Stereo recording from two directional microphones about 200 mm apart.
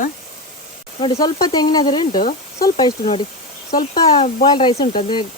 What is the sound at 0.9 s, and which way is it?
Speech, 25° left (ahead or behind).